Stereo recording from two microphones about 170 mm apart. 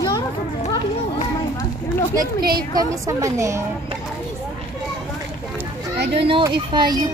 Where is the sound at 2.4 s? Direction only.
60° right (ahead or behind).